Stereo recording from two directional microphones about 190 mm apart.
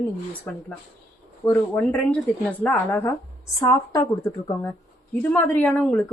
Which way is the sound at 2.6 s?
10° left (ahead or behind).